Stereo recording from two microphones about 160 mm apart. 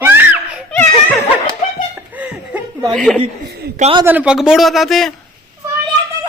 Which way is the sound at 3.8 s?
35° right (ahead or behind).